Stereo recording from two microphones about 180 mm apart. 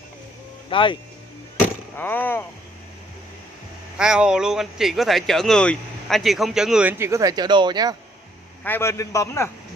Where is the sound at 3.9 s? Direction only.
5° right (ahead or behind); by 7.9 s 25° right (ahead or behind).